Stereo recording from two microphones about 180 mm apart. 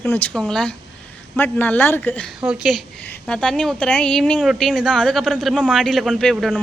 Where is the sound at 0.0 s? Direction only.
10° left (ahead or behind).